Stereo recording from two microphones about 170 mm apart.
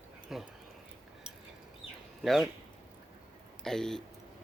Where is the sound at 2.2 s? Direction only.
Centre (ahead or behind).